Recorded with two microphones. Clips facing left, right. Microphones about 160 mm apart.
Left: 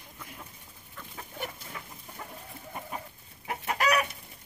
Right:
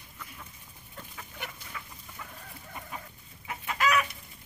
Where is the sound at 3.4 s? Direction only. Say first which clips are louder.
Left 4 dB; 55° left (ahead or behind).